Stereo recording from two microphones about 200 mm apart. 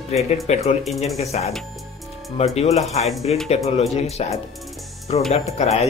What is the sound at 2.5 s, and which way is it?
Speech, 30° left (ahead or behind).